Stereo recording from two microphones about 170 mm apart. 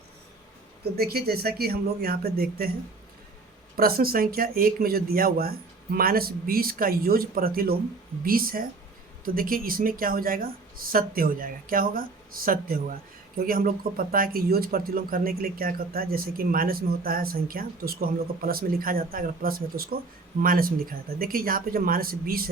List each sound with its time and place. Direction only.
0.9 s speech: 65° right (ahead or behind)
3.8 s speech: 60° right (ahead or behind)